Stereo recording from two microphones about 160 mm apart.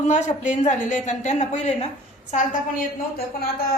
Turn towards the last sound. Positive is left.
turn(degrees=70)  # may be behind; listen again after turning